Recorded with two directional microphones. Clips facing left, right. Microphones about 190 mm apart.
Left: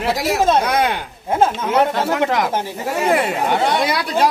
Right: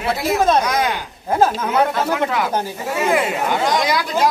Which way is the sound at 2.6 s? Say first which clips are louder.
Even; 35° left (ahead or behind).